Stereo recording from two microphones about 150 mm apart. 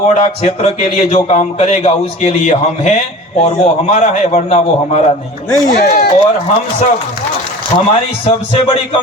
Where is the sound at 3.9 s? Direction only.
50° left (ahead or behind).